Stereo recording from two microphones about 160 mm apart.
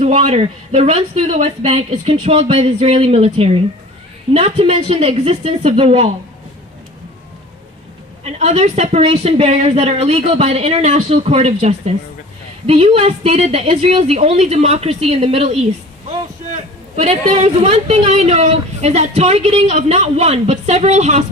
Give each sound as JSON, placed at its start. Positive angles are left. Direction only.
{"t": 0.0, "sound": "a woman's voice", "side_deg": -40}
{"t": 8.2, "sound": "a woman's voice", "side_deg": -40}
{"t": 17.0, "sound": "a woman's voice", "side_deg": -45}